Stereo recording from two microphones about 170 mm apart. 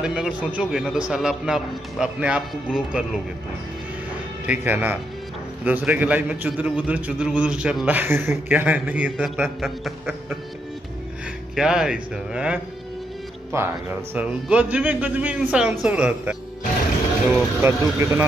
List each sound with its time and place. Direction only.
0.0 s a man's voice: 5° right (ahead or behind)
4.5 s a man's voice: 10° right (ahead or behind)
11.5 s a man's voice: 5° right (ahead or behind)
13.5 s a man's voice: 15° right (ahead or behind)